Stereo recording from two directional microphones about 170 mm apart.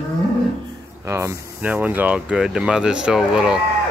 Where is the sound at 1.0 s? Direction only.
15° right (ahead or behind).